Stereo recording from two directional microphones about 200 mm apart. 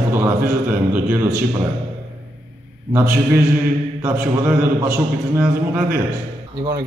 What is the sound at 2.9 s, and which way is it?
Speech, 15° right (ahead or behind).